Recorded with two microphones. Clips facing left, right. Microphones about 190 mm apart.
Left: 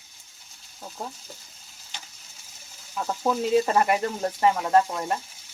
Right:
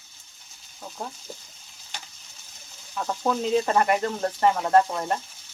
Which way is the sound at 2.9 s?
10° left (ahead or behind).